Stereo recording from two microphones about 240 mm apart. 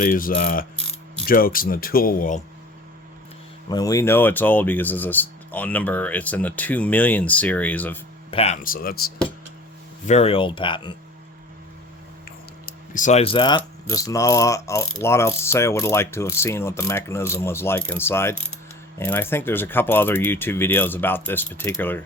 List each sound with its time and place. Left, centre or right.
0.0 s speech: left
3.7 s speech: centre
8.3 s speech: left
10.1 s speech: left
12.6 s speech: left; by 22.0 s centre